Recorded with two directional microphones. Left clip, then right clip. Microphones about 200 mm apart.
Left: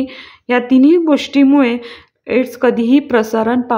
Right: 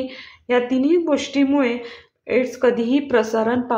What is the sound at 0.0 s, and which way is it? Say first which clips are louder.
Speech: left 5 dB; 30° left (ahead or behind).